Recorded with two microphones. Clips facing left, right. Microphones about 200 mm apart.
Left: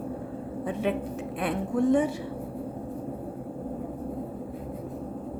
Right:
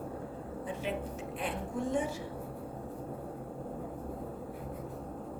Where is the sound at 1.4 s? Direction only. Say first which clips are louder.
Left 10 dB; 65° left (ahead or behind).